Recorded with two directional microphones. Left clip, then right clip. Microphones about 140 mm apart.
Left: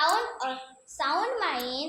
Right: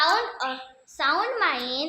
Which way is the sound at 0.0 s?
45° right (ahead or behind).